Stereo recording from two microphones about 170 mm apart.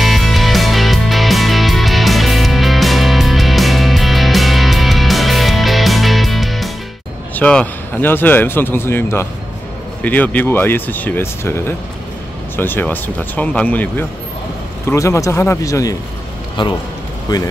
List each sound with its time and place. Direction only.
0.0 s music: centre (ahead or behind)
7.3 s speech: 10° left (ahead or behind)